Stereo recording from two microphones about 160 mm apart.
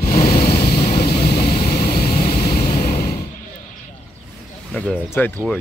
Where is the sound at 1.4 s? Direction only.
70° left (ahead or behind).